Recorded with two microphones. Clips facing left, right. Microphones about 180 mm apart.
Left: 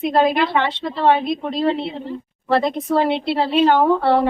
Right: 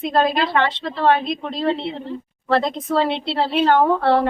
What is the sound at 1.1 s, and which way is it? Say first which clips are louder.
Speech: left 3 dB; 5° left (ahead or behind).